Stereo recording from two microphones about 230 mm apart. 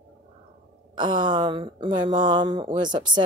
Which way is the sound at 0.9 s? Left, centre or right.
Centre.